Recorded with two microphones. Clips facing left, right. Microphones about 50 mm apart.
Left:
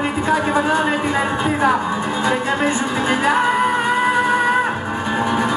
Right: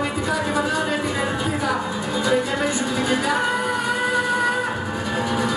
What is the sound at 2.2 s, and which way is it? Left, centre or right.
Music, left.